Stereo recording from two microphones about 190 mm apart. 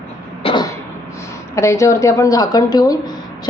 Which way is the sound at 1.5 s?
15° left (ahead or behind).